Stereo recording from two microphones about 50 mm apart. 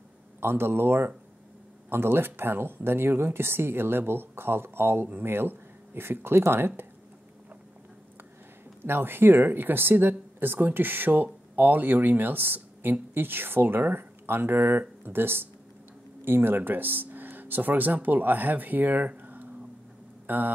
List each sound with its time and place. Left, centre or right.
0.4 s speech: right
8.8 s speech: right
20.2 s a sound: right